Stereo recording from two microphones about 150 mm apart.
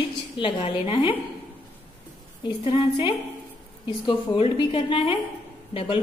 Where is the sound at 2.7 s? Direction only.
35° left (ahead or behind).